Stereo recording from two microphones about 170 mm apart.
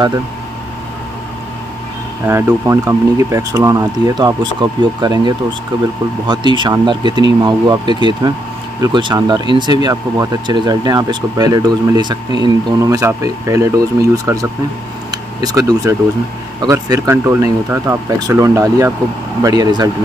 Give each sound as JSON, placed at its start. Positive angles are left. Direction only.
{"t": 2.2, "sound": "speech", "side_deg": -15}